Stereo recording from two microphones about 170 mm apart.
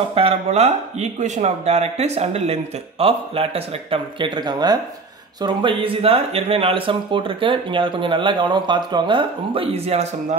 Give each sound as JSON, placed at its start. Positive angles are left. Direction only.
{"t": 0.1, "sound": "speech", "side_deg": -35}